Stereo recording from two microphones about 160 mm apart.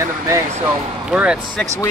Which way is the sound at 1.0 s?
5° right (ahead or behind).